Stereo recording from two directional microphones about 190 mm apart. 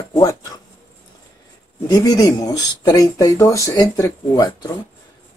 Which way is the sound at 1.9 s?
20° left (ahead or behind).